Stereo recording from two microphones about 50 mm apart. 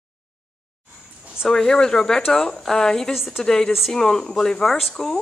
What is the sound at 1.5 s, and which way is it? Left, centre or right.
Speech, centre.